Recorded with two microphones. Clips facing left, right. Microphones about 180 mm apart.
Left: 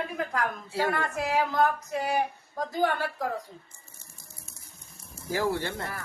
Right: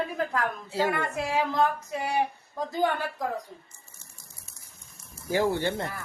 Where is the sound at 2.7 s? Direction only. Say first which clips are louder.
Even; 20° right (ahead or behind).